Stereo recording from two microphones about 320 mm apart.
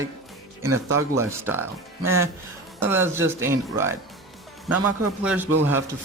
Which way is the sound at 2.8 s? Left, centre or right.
Centre.